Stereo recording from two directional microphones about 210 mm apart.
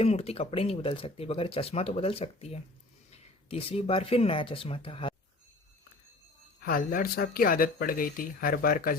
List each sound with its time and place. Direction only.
0.0 s speech: 30° left (ahead or behind)
6.6 s speech: 45° left (ahead or behind)